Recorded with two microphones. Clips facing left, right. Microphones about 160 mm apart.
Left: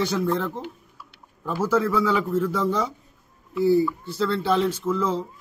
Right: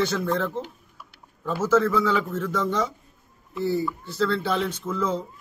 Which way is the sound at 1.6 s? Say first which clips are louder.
Right 1 dB; 10° left (ahead or behind).